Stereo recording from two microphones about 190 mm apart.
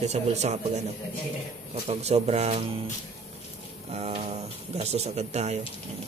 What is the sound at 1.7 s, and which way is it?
A man's voice, 35° right (ahead or behind).